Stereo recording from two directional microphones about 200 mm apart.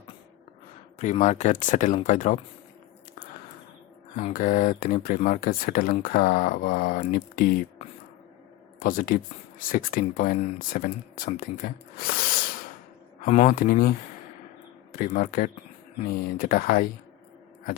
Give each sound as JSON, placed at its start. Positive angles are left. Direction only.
{"t": 0.9, "sound": "speech", "side_deg": 35}
{"t": 4.2, "sound": "speech", "side_deg": 45}
{"t": 14.9, "sound": "speech", "side_deg": 40}